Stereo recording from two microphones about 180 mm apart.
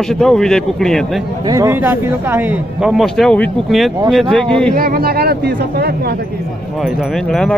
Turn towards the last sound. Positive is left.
turn(degrees=5)  # may be behind; listen again after turning